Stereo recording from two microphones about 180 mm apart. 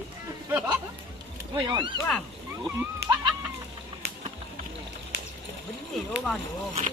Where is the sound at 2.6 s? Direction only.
15° right (ahead or behind).